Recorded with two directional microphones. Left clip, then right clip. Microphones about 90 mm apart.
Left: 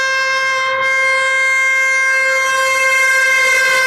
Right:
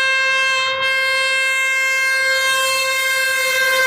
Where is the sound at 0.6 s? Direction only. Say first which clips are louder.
Left 3 dB; 20° right (ahead or behind).